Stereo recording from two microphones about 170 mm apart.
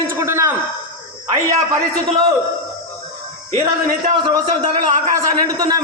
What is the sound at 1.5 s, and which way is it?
Speech, 20° right (ahead or behind).